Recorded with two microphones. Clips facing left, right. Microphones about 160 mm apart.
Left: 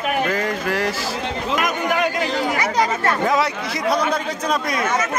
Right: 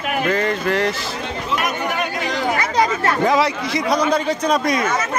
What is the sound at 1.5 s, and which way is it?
Speech, 90° left.